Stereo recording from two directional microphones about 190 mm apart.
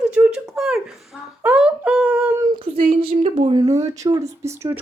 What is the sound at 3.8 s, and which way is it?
Speech, 20° right (ahead or behind).